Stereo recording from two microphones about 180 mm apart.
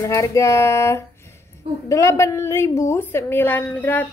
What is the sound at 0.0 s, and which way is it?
A woman's voice, 20° left (ahead or behind).